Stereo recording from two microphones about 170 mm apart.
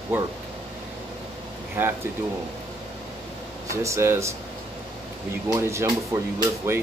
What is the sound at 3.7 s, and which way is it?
Speech, 15° right (ahead or behind).